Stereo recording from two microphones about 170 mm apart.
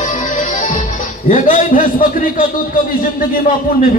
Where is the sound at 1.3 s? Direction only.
50° left (ahead or behind).